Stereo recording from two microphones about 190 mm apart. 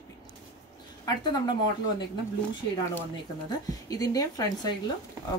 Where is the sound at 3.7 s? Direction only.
20° left (ahead or behind).